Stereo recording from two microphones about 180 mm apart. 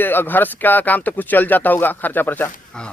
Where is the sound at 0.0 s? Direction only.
10° left (ahead or behind).